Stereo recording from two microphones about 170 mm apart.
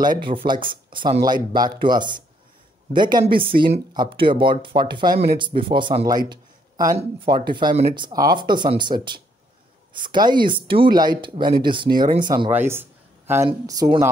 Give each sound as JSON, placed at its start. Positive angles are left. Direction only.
{"t": 0.0, "sound": "speech", "side_deg": -25}
{"t": 3.5, "sound": "speech", "side_deg": -60}
{"t": 3.9, "sound": "speech", "side_deg": -30}
{"t": 9.9, "sound": "speech", "side_deg": -25}
{"t": 12.4, "sound": "a woman's voice", "side_deg": -15}